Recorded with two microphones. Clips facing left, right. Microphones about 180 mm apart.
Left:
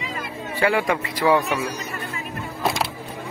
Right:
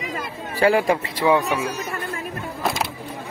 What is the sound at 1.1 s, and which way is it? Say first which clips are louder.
Speech: left 1 dB; 15° right (ahead or behind).